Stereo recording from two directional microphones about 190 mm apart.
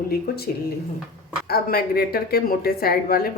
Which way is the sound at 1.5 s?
55° left (ahead or behind).